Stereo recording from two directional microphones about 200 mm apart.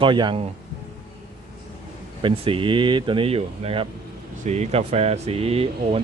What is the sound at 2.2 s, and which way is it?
Speech, 25° right (ahead or behind).